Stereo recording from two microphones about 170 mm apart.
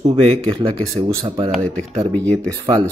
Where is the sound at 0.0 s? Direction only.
35° right (ahead or behind).